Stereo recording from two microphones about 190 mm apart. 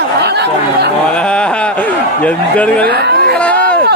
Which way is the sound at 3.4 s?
5° left (ahead or behind).